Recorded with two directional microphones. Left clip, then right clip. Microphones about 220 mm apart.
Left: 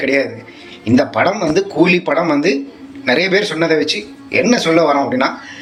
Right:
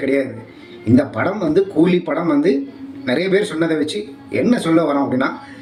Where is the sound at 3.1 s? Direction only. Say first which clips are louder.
Left 4 dB; 15° right (ahead or behind).